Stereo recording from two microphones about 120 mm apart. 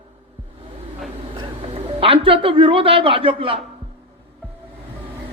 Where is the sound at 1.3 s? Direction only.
50° right (ahead or behind).